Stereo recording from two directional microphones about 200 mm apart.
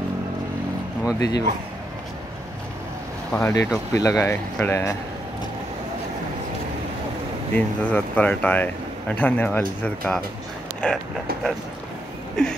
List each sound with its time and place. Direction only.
1.0 s speech: 20° left (ahead or behind)
3.3 s speech: 10° left (ahead or behind)
7.5 s speech: 10° left (ahead or behind)
10.8 s a sound: 5° left (ahead or behind)